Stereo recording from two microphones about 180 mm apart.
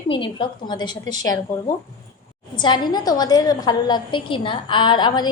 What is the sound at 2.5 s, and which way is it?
A woman's voice, 25° left (ahead or behind).